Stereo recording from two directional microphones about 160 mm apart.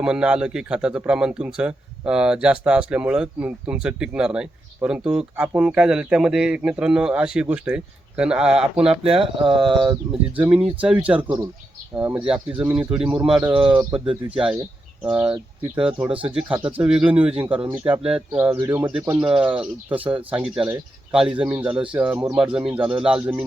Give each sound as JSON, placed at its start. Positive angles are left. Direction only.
{"t": 0.0, "sound": "a man's voice", "side_deg": -5}
{"t": 8.9, "sound": "speech", "side_deg": -35}
{"t": 10.1, "sound": "speech", "side_deg": -10}
{"t": 14.0, "sound": "speech", "side_deg": -35}
{"t": 15.0, "sound": "a man's voice", "side_deg": -10}